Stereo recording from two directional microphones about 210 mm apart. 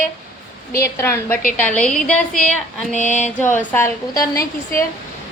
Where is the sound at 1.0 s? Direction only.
10° left (ahead or behind).